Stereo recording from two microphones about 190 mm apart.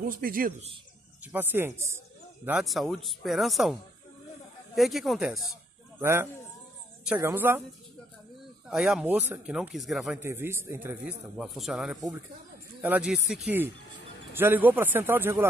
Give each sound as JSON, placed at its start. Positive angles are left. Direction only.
{"t": 0.0, "sound": "a man's voice", "side_deg": -45}
{"t": 1.2, "sound": "speech", "side_deg": -10}
{"t": 4.7, "sound": "speech", "side_deg": 0}
{"t": 7.2, "sound": "speech", "side_deg": -15}
{"t": 8.6, "sound": "speech", "side_deg": -5}
{"t": 10.2, "sound": "speech", "side_deg": -10}